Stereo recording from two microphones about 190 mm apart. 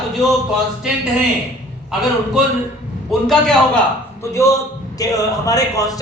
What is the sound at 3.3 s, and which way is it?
Speech, 5° left (ahead or behind).